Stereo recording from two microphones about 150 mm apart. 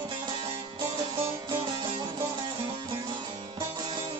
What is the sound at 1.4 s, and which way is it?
Music, 30° right (ahead or behind).